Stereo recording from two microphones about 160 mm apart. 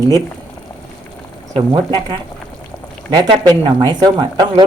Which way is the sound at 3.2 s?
30° right (ahead or behind).